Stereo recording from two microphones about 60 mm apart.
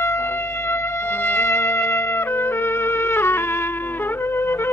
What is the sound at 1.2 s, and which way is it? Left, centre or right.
Music, left.